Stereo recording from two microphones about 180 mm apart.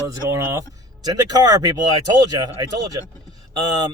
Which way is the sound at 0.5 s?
20° right (ahead or behind).